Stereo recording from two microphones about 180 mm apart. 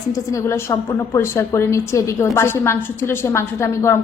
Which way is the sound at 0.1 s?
20° left (ahead or behind).